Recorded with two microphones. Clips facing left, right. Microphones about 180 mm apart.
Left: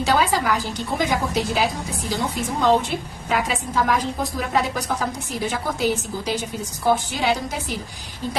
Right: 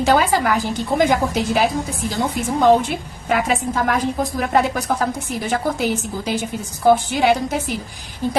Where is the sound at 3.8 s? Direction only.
55° right (ahead or behind).